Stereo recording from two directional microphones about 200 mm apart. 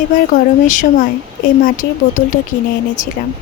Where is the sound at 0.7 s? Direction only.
40° left (ahead or behind).